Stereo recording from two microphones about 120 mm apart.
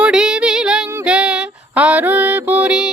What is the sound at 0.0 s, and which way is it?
Female singing, 5° right (ahead or behind).